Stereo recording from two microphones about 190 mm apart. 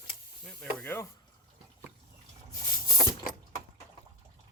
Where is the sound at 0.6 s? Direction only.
10° left (ahead or behind).